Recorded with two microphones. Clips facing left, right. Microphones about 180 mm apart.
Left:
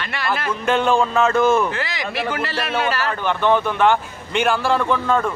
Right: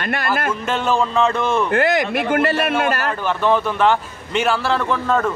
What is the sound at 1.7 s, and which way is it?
A man's voice, 55° right (ahead or behind).